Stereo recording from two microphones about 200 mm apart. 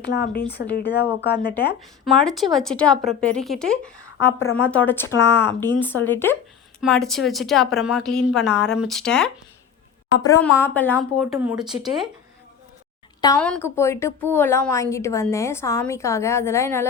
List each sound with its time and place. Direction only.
0.0 s speech: 55° left (ahead or behind)
2.2 s a woman's voice: centre (ahead or behind)
10.2 s a woman's voice: 15° left (ahead or behind); by 12.0 s centre (ahead or behind)
13.4 s a woman's voice: 10° left (ahead or behind)